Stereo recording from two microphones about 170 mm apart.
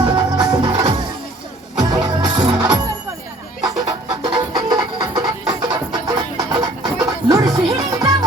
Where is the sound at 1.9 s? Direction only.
30° right (ahead or behind).